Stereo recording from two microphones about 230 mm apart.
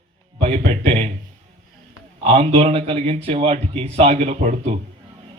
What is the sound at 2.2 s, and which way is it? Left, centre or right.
A man's voice, right.